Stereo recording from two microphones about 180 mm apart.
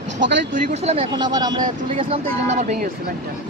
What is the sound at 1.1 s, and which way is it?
Speech, 20° right (ahead or behind).